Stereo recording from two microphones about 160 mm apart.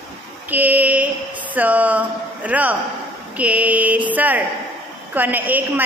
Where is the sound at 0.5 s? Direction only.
10° right (ahead or behind).